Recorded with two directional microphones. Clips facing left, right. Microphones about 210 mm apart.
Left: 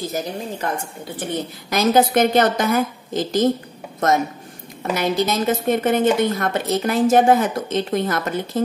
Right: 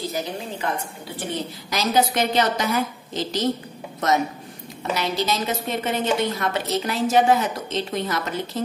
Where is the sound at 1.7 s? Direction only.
50° left (ahead or behind).